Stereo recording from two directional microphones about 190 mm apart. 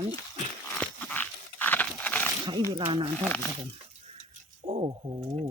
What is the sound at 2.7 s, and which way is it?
Speech, 25° right (ahead or behind).